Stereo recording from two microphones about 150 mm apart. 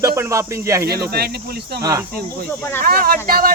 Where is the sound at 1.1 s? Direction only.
90° right.